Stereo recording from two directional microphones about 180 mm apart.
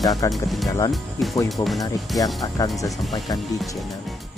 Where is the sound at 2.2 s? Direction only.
20° left (ahead or behind).